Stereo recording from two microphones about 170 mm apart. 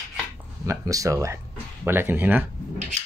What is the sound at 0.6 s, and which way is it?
Speech, 20° right (ahead or behind).